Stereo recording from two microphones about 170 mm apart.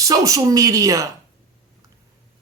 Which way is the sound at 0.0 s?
20° right (ahead or behind).